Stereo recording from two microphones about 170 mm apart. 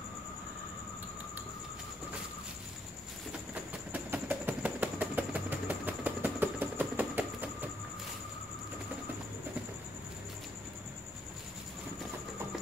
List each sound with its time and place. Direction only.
3.9 s train: 10° right (ahead or behind)